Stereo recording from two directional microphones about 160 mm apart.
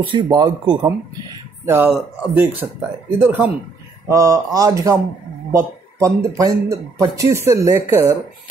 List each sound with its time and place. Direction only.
0.0 s speech: 30° right (ahead or behind)
1.9 s speech: 10° right (ahead or behind)